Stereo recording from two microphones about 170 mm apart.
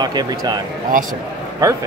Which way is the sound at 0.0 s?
25° right (ahead or behind).